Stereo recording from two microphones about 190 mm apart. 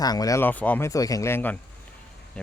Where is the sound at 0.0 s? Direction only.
20° left (ahead or behind).